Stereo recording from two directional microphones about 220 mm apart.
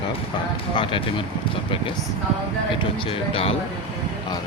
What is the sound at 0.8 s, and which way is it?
Speech, 25° left (ahead or behind).